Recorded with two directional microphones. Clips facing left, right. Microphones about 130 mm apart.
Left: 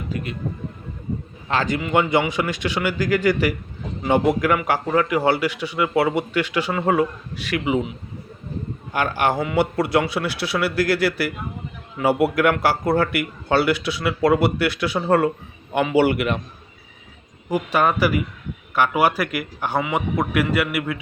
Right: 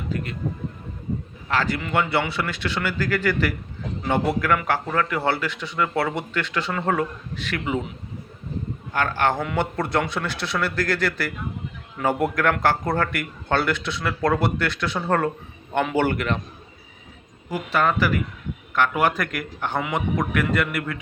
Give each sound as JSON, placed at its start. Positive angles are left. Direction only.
{"t": 0.1, "sound": "a man's voice", "side_deg": 15}
{"t": 1.5, "sound": "a man's voice", "side_deg": 20}
{"t": 8.9, "sound": "a man's voice", "side_deg": 10}
{"t": 17.5, "sound": "a man's voice", "side_deg": 15}